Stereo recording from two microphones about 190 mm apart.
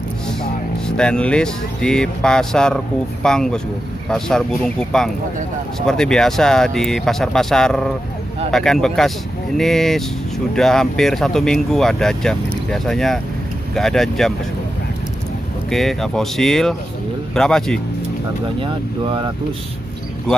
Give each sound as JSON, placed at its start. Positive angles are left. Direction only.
{"t": 0.3, "sound": "speech", "side_deg": 5}
{"t": 15.7, "sound": "speech", "side_deg": 0}
{"t": 18.6, "sound": "speech", "side_deg": -25}